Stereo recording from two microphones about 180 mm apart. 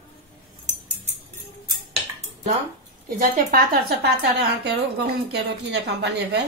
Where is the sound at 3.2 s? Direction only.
45° right (ahead or behind).